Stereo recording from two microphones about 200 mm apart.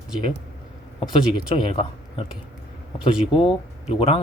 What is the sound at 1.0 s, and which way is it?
Speech, 25° left (ahead or behind).